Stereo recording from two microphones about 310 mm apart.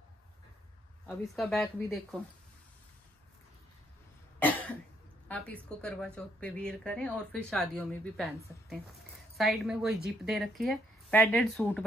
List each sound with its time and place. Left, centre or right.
1.0 s speech: centre
4.4 s cough: centre
5.3 s speech: centre